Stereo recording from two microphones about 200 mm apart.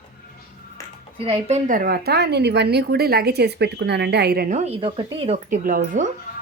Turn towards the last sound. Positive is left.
turn(degrees=-40)  # may be behind; listen again after turning